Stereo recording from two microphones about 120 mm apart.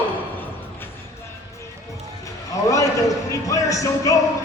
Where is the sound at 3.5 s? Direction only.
25° left (ahead or behind).